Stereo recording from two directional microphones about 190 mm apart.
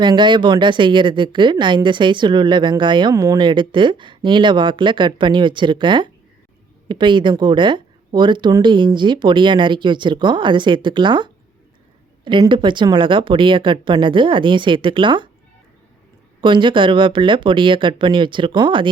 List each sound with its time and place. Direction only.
0.0 s speech: 25° right (ahead or behind)
16.4 s speech: 25° right (ahead or behind)